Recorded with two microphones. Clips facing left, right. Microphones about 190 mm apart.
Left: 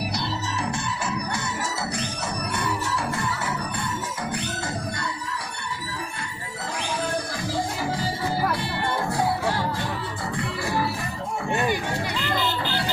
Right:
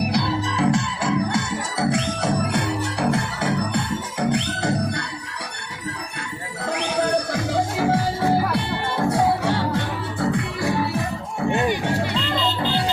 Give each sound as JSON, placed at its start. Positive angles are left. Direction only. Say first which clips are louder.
{"t": 0.1, "sound": "music", "louder": "right 6 dB", "side_deg": -75}
{"t": 7.0, "sound": "music", "louder": "right 9 dB", "side_deg": -75}